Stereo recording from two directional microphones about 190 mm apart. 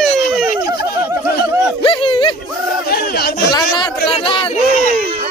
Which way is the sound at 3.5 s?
25° left (ahead or behind).